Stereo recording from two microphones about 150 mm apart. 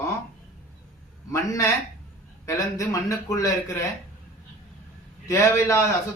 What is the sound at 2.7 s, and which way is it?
A man's voice, 20° left (ahead or behind).